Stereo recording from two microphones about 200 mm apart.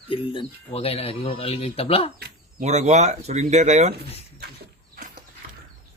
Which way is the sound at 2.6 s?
35° right (ahead or behind).